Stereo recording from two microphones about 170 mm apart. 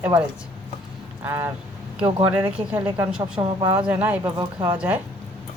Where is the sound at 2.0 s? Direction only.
30° right (ahead or behind).